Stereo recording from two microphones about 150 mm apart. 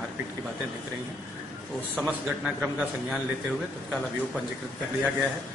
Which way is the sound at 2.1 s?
5° right (ahead or behind).